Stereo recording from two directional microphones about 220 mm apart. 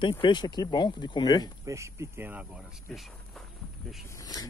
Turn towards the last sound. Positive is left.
turn(degrees=15)  # may be behind; listen again after turning